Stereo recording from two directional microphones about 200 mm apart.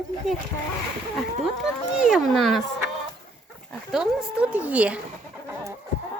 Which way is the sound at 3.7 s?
Centre (ahead or behind).